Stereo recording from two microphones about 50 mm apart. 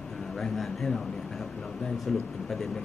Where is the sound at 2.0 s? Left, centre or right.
Centre.